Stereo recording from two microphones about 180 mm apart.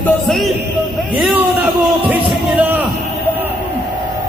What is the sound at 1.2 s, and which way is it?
A man's voice, 10° right (ahead or behind).